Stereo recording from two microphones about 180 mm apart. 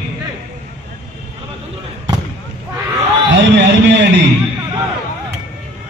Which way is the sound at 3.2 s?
80° right.